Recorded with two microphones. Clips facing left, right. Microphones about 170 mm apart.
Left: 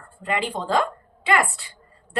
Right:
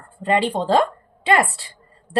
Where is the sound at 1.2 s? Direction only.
35° right (ahead or behind).